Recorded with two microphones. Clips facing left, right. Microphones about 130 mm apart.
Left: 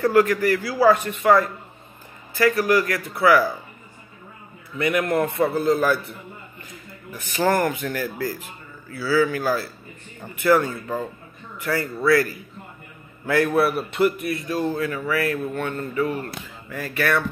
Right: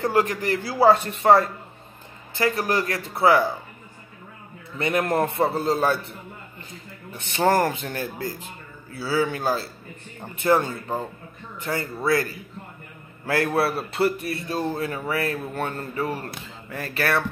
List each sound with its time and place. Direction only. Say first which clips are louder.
0.0 s speech: left 4 dB; 25° right (ahead or behind)
4.7 s speech: left 1 dB; 30° right (ahead or behind)